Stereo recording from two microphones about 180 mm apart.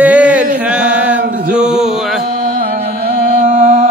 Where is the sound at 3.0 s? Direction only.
45° right (ahead or behind).